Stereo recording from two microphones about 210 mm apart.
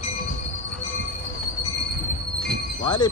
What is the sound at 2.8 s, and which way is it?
Speech, 20° left (ahead or behind).